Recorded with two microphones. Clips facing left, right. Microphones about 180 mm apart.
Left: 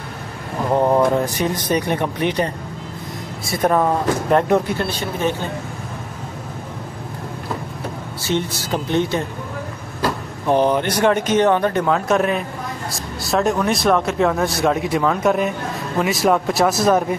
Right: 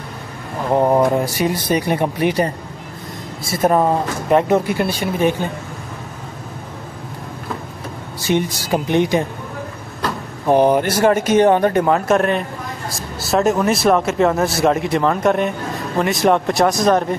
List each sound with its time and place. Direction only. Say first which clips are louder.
0.7 s speech: right 1 dB; 15° right (ahead or behind)
8.2 s speech: right 4 dB; 15° right (ahead or behind)
10.4 s speech: right 3 dB; 15° right (ahead or behind); by 17.0 s 5° left (ahead or behind)